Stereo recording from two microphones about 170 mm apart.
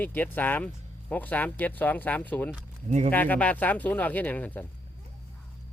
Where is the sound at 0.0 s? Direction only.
10° left (ahead or behind).